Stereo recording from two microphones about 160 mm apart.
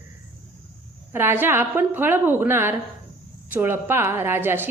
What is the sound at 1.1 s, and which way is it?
A woman's voice, 15° right (ahead or behind).